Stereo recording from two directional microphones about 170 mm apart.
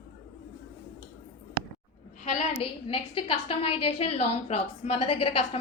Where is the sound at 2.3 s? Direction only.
35° left (ahead or behind).